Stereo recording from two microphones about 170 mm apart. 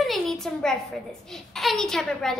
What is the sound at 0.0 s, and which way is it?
A child's voice, centre (ahead or behind).